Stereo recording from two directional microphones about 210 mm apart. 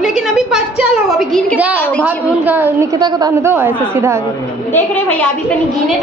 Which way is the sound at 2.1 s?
10° right (ahead or behind).